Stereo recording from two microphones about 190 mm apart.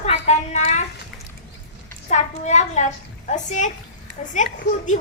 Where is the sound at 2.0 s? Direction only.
40° left (ahead or behind).